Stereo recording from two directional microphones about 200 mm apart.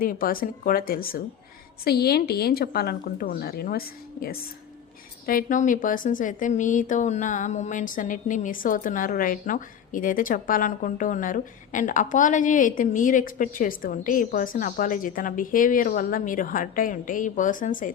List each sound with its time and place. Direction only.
0.0 s a woman's voice: 45° left (ahead or behind)